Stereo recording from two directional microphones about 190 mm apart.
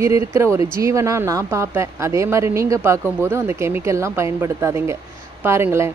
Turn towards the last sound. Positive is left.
turn(degrees=-15)  # may be behind; listen again after turning